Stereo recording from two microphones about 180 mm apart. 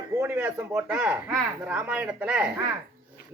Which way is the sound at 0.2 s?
15° right (ahead or behind).